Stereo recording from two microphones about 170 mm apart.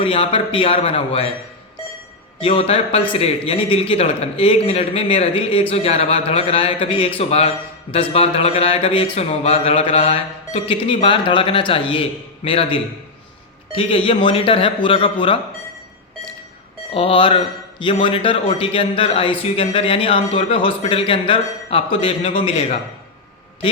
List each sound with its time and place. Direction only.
0.0 s speech: 35° left (ahead or behind)
2.4 s speech: 35° left (ahead or behind)
16.9 s speech: 30° left (ahead or behind)